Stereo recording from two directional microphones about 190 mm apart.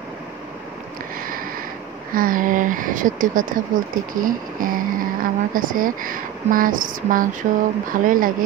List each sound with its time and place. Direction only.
2.1 s speech: 45° right (ahead or behind)